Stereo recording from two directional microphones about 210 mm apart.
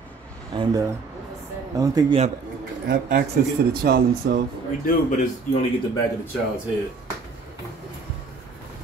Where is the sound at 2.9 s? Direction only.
45° right (ahead or behind).